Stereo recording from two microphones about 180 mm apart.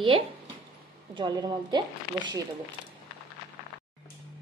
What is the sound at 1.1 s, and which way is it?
Speech, 25° right (ahead or behind).